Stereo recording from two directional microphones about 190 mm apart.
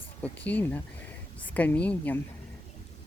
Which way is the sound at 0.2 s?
10° left (ahead or behind).